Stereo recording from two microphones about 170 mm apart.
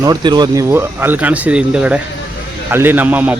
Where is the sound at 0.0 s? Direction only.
25° right (ahead or behind).